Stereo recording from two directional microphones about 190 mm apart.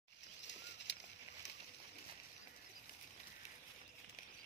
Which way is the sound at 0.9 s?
65° left (ahead or behind).